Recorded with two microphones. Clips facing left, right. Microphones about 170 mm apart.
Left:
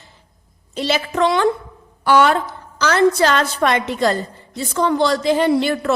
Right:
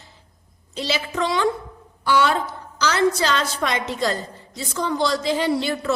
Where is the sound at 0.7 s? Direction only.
55° left (ahead or behind).